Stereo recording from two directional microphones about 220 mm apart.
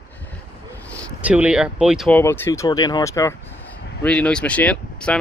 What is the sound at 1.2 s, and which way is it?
Speech, 5° right (ahead or behind).